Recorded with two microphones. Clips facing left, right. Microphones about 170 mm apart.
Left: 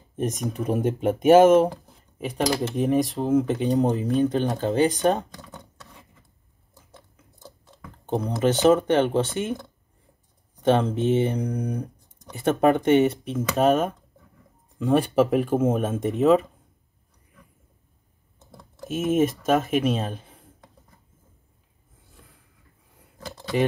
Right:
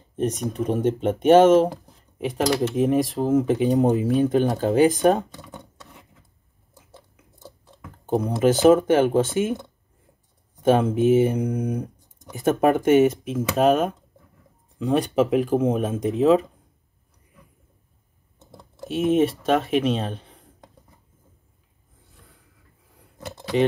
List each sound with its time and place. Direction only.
0.1 s speech: 5° left (ahead or behind)
7.3 s speech: 5° right (ahead or behind)
18.6 s typing: centre (ahead or behind)
19.4 s speech: 5° left (ahead or behind)